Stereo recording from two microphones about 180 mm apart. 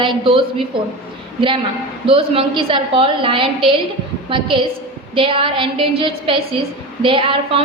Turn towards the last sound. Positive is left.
turn(degrees=-30)  # may be behind; listen again after turning